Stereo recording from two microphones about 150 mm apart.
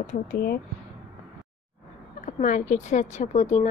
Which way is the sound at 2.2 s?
55° left (ahead or behind).